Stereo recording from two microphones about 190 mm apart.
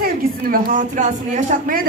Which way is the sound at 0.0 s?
45° right (ahead or behind).